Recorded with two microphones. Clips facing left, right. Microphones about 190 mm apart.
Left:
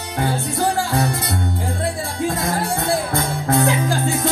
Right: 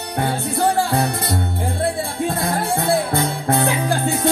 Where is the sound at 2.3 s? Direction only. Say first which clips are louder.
Right 1 dB; 60° right (ahead or behind).